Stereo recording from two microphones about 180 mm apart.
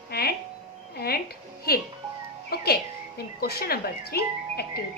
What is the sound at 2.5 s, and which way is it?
Speech, 60° left (ahead or behind).